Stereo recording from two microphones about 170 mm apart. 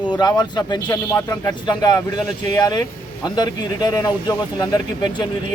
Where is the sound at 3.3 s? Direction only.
25° left (ahead or behind).